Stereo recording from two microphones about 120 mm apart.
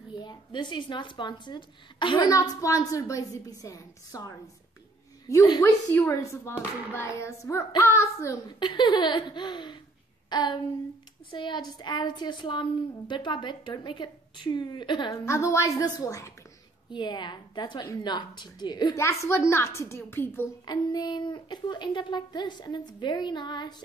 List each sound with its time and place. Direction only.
0.1 s a woman's voice: 40° left (ahead or behind)
2.2 s a woman's voice: 30° left (ahead or behind)
5.3 s a woman's voice: 25° left (ahead or behind)
8.5 s a woman's voice: 40° left (ahead or behind)
15.1 s a woman's voice: 25° left (ahead or behind)
16.9 s a woman's voice: 40° left (ahead or behind)
18.9 s a woman's voice: 20° left (ahead or behind)
20.6 s a woman's voice: 35° left (ahead or behind)